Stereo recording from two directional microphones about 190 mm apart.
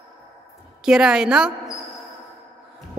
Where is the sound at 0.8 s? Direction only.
5° right (ahead or behind).